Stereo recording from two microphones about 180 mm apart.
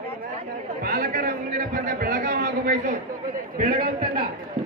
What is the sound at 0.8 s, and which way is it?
A man's voice, 60° right (ahead or behind).